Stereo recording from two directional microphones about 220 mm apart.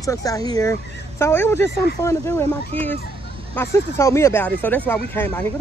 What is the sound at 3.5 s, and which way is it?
Speech, 10° left (ahead or behind).